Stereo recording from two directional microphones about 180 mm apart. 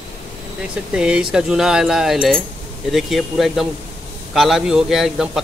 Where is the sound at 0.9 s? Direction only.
5° right (ahead or behind).